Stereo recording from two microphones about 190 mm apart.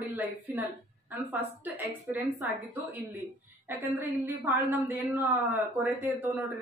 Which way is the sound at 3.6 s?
10° right (ahead or behind).